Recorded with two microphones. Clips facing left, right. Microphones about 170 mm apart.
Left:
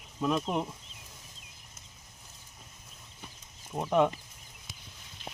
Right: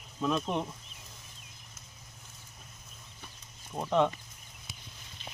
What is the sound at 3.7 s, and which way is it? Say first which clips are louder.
Speech: left 1 dB; 10° left (ahead or behind).